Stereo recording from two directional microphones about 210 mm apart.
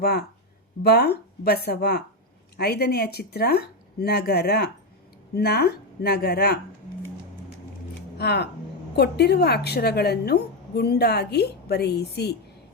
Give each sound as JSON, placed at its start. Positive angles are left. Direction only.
{"t": 0.0, "sound": "a woman's voice", "side_deg": 50}
{"t": 8.2, "sound": "a woman's voice", "side_deg": 50}